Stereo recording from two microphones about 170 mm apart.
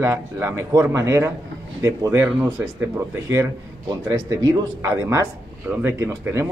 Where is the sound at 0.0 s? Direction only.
15° right (ahead or behind).